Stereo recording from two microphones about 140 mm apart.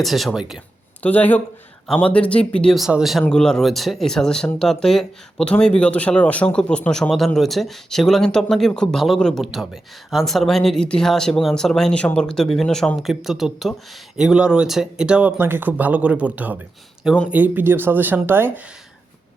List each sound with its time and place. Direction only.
0.0 s speech: centre (ahead or behind)
1.0 s speech: 10° left (ahead or behind); by 18.6 s 15° right (ahead or behind)